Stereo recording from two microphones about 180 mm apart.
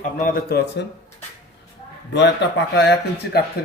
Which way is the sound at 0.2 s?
50° left (ahead or behind).